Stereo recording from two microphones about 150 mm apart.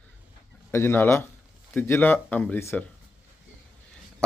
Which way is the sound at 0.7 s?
15° left (ahead or behind).